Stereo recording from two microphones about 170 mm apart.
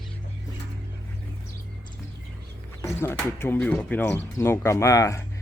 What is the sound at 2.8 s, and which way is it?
Speech, 15° left (ahead or behind).